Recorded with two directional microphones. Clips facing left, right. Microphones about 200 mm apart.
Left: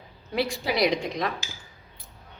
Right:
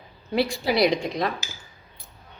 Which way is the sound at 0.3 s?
30° right (ahead or behind).